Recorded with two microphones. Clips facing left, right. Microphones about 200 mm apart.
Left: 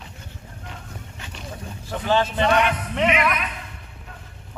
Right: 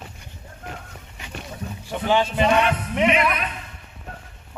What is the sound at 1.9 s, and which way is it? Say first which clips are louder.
Speech: right 1 dB; 15° right (ahead or behind).